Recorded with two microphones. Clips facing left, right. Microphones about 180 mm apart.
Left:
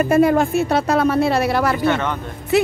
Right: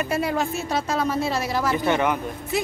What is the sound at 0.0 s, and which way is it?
Speech, 50° left (ahead or behind).